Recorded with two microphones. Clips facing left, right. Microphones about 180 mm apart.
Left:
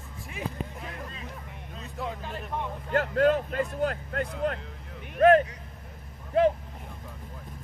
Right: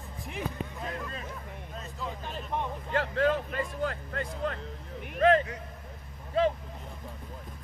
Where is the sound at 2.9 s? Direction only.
50° left (ahead or behind).